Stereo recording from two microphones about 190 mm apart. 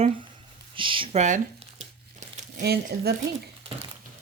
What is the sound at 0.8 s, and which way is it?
Speech, 25° right (ahead or behind).